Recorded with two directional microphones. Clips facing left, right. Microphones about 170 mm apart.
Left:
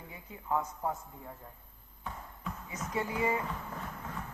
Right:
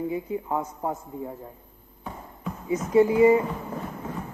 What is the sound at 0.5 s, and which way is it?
Speech, 25° right (ahead or behind).